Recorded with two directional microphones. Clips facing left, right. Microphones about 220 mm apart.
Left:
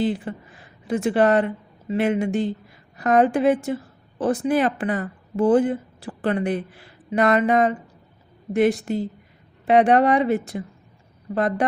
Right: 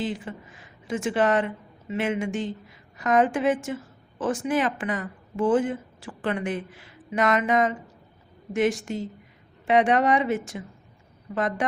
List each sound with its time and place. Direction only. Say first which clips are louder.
0.0 s speech: left 6 dB; 40° left (ahead or behind)